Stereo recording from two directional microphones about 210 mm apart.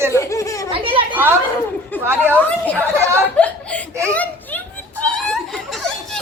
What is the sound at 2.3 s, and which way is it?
Speech, 5° left (ahead or behind).